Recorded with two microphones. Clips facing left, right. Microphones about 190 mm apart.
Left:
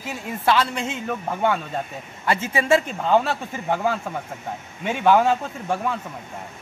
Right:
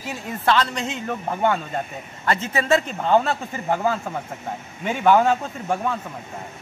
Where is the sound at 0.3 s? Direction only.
10° left (ahead or behind).